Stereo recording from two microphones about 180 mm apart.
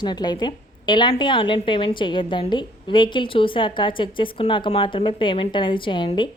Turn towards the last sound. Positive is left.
turn(degrees=25)  # may be behind; listen again after turning